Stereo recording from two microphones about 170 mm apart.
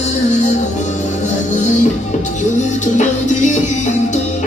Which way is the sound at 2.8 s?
45° left (ahead or behind).